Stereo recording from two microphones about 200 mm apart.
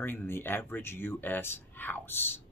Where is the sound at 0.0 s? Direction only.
10° left (ahead or behind).